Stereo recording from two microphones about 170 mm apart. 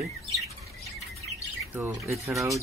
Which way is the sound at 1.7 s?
15° right (ahead or behind).